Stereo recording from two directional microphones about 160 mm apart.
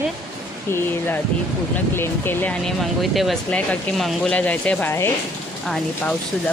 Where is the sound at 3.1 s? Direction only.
Centre (ahead or behind).